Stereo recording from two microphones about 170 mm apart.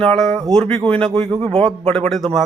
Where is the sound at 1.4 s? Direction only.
30° right (ahead or behind).